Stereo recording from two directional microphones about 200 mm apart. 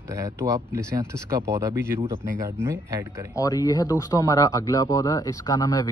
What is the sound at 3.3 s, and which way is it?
Speech, 20° left (ahead or behind).